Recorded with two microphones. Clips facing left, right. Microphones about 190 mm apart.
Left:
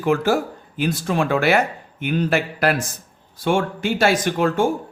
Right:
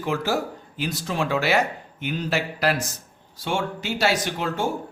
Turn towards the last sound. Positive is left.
turn(degrees=50)  # may be behind; listen again after turning